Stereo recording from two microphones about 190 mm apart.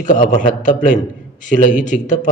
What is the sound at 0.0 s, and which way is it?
A man's voice, 40° left (ahead or behind).